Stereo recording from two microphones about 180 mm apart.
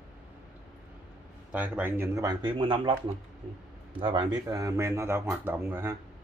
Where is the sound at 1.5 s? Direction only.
10° right (ahead or behind); by 2.9 s 30° right (ahead or behind).